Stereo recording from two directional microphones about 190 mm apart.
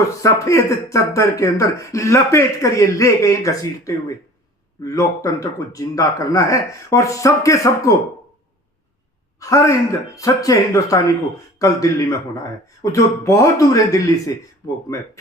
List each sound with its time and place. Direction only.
0.2 s speech: 15° left (ahead or behind)
9.4 s speech: 15° left (ahead or behind)